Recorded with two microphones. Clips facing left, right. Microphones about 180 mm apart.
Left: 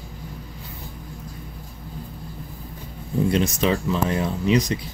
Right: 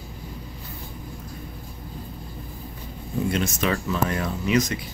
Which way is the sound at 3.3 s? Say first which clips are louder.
Left 3 dB; 30° left (ahead or behind).